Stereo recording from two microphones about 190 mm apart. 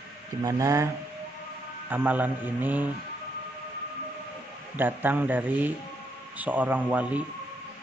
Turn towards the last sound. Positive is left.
turn(degrees=-10)  # may be behind; listen again after turning